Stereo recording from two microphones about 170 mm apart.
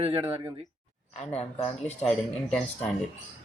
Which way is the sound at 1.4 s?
35° left (ahead or behind).